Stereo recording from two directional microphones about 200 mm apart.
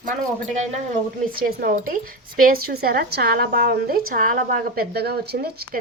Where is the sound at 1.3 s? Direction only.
50° right (ahead or behind).